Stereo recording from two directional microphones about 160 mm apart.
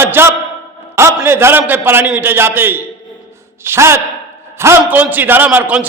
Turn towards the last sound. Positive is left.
turn(degrees=-10)  # may be behind; listen again after turning